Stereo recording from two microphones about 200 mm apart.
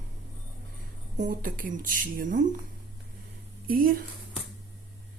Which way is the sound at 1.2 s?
45° right (ahead or behind).